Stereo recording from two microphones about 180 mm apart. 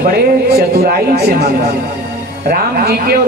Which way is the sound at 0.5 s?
60° right (ahead or behind).